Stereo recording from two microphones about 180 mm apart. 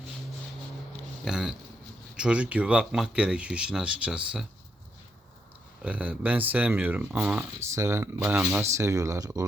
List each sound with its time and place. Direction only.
1.2 s a sound: 5° right (ahead or behind)
2.1 s speech: 5° right (ahead or behind)
5.8 s speech: 5° right (ahead or behind)